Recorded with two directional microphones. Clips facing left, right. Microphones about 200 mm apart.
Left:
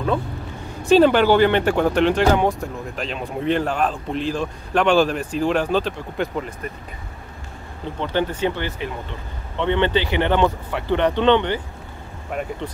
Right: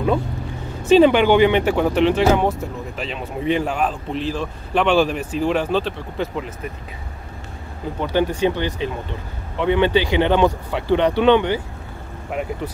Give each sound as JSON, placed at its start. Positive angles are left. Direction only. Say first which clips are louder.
{"t": 0.8, "sound": "speech", "louder": "right 1 dB", "side_deg": 0}
{"t": 8.0, "sound": "speech", "louder": "right 3 dB", "side_deg": -10}